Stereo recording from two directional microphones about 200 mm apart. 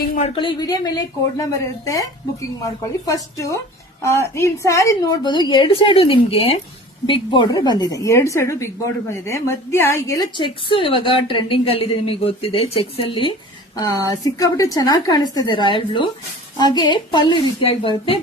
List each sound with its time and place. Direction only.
0.2 s a woman's voice: 25° left (ahead or behind)